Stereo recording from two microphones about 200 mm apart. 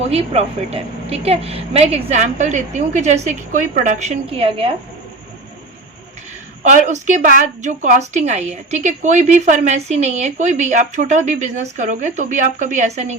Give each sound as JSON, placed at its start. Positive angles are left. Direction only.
{"t": 0.1, "sound": "a woman's voice", "side_deg": -30}
{"t": 6.6, "sound": "a woman's voice", "side_deg": -40}